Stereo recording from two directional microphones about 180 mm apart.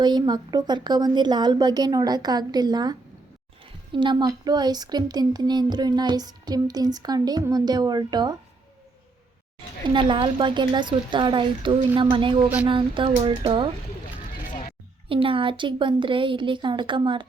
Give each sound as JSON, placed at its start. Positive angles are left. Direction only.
{"t": 0.0, "sound": "speech", "side_deg": -25}
{"t": 9.9, "sound": "speech", "side_deg": -25}
{"t": 15.1, "sound": "speech", "side_deg": -30}